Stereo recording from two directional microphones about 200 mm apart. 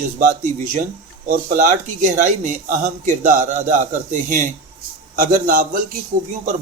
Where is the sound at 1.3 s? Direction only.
40° right (ahead or behind).